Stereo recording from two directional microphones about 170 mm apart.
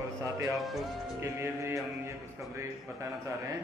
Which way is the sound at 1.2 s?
15° right (ahead or behind).